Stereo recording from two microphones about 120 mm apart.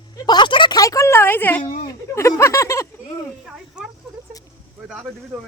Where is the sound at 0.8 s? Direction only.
25° left (ahead or behind).